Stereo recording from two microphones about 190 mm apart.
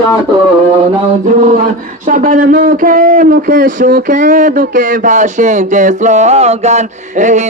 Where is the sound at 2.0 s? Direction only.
45° right (ahead or behind).